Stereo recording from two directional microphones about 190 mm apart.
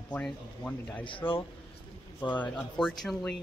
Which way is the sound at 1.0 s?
25° left (ahead or behind).